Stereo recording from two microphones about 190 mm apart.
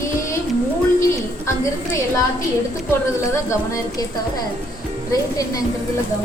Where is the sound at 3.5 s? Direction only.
20° left (ahead or behind).